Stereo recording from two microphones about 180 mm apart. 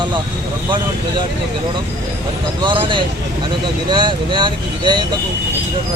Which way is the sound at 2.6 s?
25° right (ahead or behind).